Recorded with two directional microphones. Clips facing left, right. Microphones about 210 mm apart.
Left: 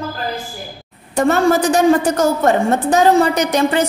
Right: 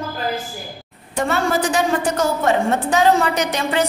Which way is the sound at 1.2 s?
40° left (ahead or behind).